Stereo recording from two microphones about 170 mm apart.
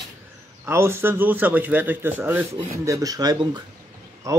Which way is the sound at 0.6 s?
15° right (ahead or behind).